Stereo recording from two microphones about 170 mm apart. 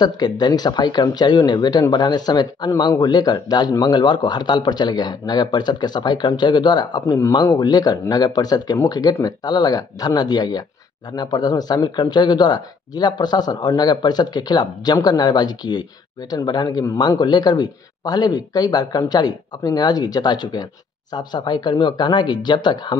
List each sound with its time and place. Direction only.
0.0 s speech: 25° left (ahead or behind)